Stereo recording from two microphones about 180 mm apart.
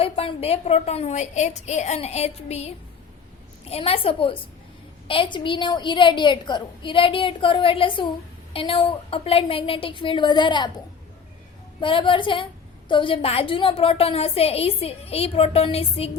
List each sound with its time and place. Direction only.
0.0 s a woman's voice: 30° left (ahead or behind)
11.8 s a woman's voice: 30° left (ahead or behind)